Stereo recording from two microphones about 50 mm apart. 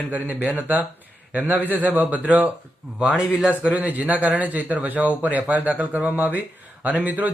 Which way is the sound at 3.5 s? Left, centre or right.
Right.